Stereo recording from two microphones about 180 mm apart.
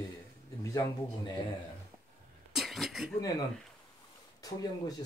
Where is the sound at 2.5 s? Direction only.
Centre (ahead or behind).